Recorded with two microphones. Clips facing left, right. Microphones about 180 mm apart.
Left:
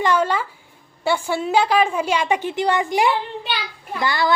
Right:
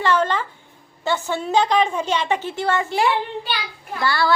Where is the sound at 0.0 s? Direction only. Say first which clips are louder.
Left 1 dB; 10° left (ahead or behind).